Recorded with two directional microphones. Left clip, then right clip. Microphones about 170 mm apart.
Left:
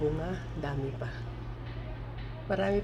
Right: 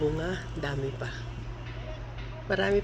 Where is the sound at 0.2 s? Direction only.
10° right (ahead or behind).